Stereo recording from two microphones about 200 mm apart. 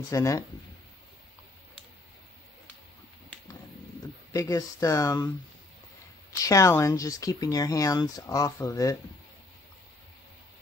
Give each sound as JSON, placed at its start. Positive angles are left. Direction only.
{"t": 0.1, "sound": "speech", "side_deg": 15}
{"t": 4.3, "sound": "speech", "side_deg": 15}
{"t": 6.4, "sound": "speech", "side_deg": 15}